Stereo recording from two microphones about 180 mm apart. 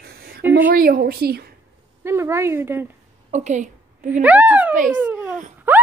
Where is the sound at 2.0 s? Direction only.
15° right (ahead or behind).